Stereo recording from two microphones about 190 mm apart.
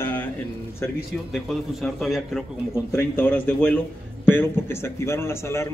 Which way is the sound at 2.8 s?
10° left (ahead or behind).